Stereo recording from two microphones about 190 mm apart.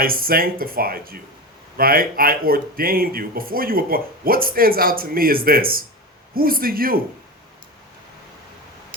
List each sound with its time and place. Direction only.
0.0 s speech: 50° right (ahead or behind)